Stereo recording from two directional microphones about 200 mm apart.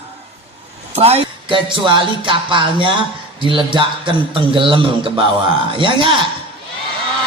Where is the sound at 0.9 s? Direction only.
30° right (ahead or behind).